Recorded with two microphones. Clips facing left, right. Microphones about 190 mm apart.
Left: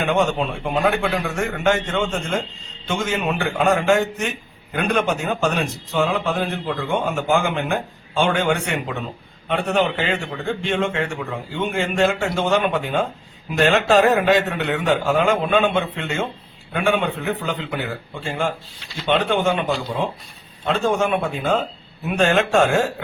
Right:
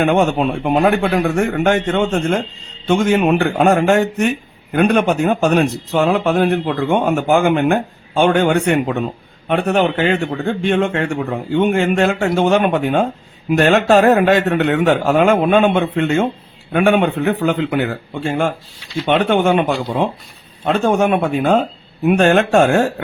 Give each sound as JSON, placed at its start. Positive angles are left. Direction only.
{"t": 0.0, "sound": "speech", "side_deg": -55}